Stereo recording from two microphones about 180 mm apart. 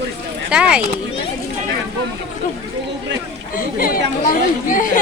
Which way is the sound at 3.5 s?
55° left (ahead or behind).